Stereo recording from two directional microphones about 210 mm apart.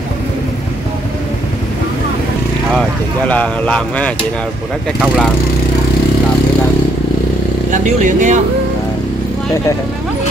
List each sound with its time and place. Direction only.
3.3 s speech: 5° left (ahead or behind)
7.7 s speech: 35° right (ahead or behind)